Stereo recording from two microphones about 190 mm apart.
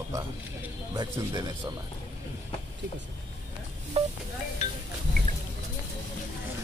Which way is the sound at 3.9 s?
30° right (ahead or behind).